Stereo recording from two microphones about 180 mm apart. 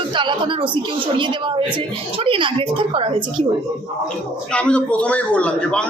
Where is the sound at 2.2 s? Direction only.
30° right (ahead or behind).